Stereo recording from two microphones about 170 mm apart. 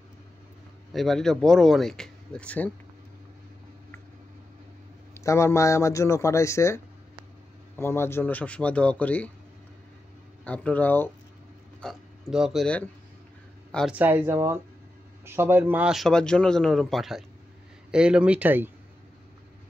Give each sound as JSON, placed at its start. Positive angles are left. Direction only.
{"t": 0.9, "sound": "speech", "side_deg": 0}
{"t": 5.1, "sound": "speech", "side_deg": 15}
{"t": 10.4, "sound": "speech", "side_deg": 10}
{"t": 11.8, "sound": "speech", "side_deg": 0}
{"t": 13.9, "sound": "speech", "side_deg": -10}